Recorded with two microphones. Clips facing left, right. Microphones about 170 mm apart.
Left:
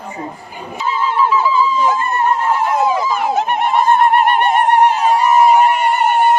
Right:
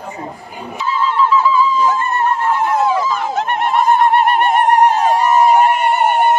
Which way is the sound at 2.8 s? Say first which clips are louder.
Even; 15° left (ahead or behind).